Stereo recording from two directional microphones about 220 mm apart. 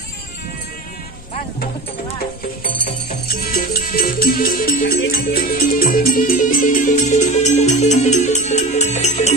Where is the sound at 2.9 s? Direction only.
40° left (ahead or behind).